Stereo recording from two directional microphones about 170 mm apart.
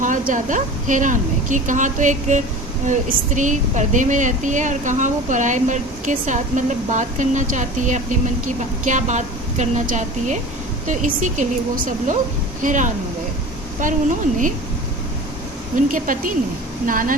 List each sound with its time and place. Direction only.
0.0 s speech: 50° right (ahead or behind)
15.7 s speech: 50° right (ahead or behind)